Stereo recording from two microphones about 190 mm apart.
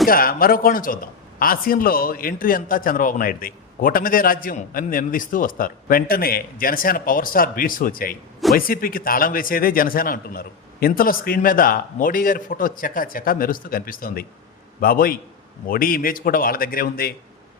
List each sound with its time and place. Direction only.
0.1 s a man's voice: 50° left (ahead or behind)